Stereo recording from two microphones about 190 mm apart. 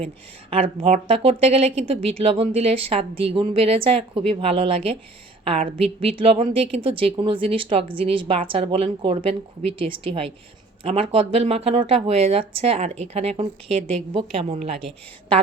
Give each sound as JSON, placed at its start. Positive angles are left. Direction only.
{"t": 0.5, "sound": "speech", "side_deg": -30}